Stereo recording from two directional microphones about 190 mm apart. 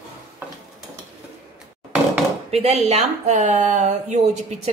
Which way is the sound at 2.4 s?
35° right (ahead or behind).